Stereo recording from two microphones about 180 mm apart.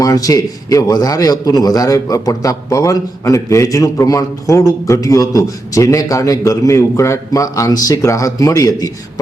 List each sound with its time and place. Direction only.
0.0 s a man's voice: 20° left (ahead or behind)